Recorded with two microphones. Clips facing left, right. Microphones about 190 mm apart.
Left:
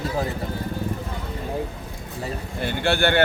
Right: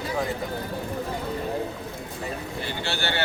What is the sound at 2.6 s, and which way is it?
Speech, 55° left (ahead or behind).